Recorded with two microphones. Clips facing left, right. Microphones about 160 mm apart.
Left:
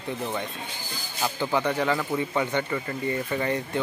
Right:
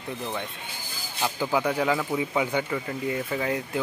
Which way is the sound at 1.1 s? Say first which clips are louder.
Even; 5° right (ahead or behind).